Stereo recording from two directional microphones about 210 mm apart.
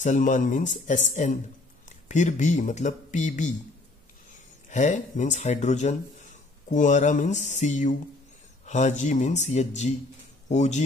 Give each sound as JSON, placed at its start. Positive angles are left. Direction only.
{"t": 0.0, "sound": "speech", "side_deg": 35}
{"t": 4.6, "sound": "speech", "side_deg": 35}